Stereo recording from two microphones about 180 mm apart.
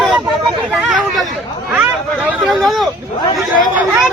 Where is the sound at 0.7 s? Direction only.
Centre (ahead or behind).